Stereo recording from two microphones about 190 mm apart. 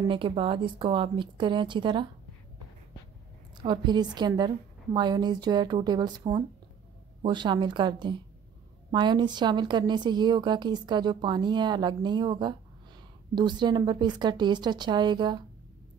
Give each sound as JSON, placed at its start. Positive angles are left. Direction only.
{"t": 0.1, "sound": "a woman's voice", "side_deg": -25}
{"t": 3.5, "sound": "a woman's voice", "side_deg": -25}